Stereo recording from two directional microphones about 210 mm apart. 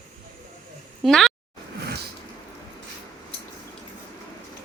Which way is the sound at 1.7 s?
50° right (ahead or behind).